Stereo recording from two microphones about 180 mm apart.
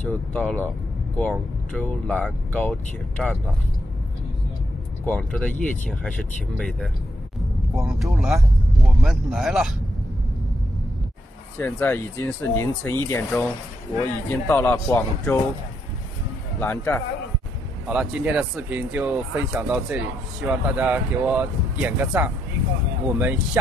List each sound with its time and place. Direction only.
0.0 s speech: 5° left (ahead or behind)
5.0 s speech: 5° left (ahead or behind)
7.7 s speech: centre (ahead or behind)
11.5 s speech: 10° left (ahead or behind)
16.5 s speech: 10° left (ahead or behind)
17.8 s speech: 5° right (ahead or behind)